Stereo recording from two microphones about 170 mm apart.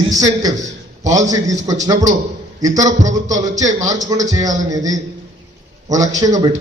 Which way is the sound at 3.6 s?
20° right (ahead or behind).